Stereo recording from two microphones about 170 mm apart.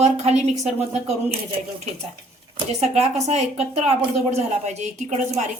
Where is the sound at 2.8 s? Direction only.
40° right (ahead or behind).